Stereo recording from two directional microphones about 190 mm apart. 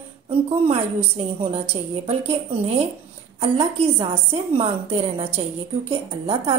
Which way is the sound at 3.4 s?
30° right (ahead or behind).